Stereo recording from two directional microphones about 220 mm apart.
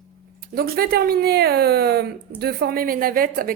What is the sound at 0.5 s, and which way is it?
A woman's voice, 45° right (ahead or behind).